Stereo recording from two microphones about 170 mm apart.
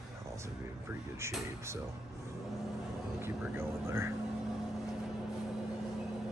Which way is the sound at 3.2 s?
15° right (ahead or behind).